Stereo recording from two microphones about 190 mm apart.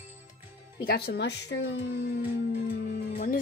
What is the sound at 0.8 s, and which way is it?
Speech, 55° left (ahead or behind).